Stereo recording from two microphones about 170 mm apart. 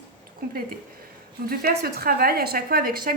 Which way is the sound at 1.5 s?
60° right (ahead or behind).